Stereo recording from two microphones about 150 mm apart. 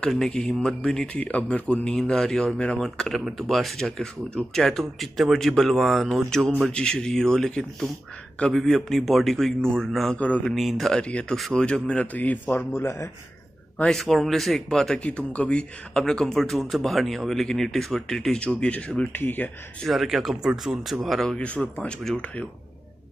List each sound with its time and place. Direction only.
0.0 s speech: 5° left (ahead or behind)
13.7 s speech: centre (ahead or behind)
19.9 s speech: centre (ahead or behind)